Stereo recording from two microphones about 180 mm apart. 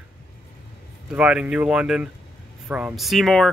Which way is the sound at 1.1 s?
5° right (ahead or behind).